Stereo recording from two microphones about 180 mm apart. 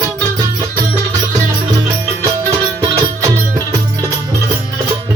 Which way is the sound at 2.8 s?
20° right (ahead or behind).